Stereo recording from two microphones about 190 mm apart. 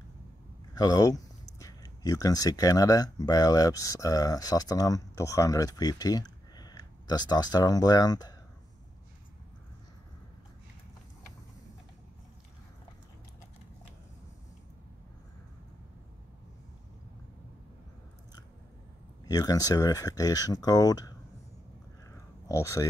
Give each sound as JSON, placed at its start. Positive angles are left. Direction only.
{"t": 0.7, "sound": "speech", "side_deg": 20}
{"t": 19.2, "sound": "speech", "side_deg": 20}
{"t": 22.1, "sound": "a sound", "side_deg": 15}